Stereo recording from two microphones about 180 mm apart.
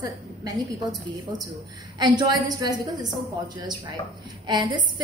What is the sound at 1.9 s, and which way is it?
A woman's voice, 25° right (ahead or behind).